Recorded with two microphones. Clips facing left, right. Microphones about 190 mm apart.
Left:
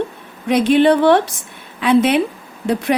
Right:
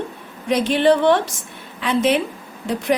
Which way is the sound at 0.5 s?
60° left (ahead or behind).